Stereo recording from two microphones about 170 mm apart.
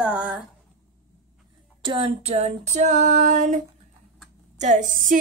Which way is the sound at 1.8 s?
30° right (ahead or behind).